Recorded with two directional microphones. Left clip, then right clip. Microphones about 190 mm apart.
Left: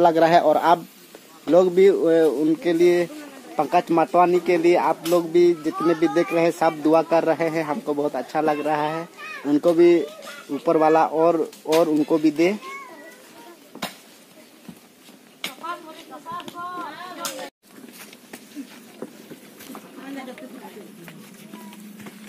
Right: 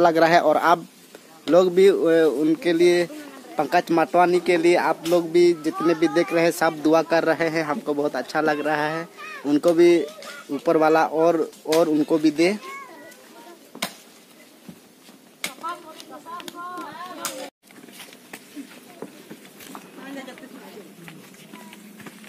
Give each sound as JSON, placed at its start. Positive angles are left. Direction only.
{"t": 0.0, "sound": "speech", "side_deg": 0}
{"t": 13.7, "sound": "stir", "side_deg": -20}
{"t": 17.2, "sound": "a sound", "side_deg": -40}